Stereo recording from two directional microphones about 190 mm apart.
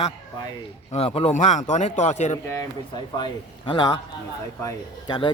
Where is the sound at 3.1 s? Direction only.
25° left (ahead or behind).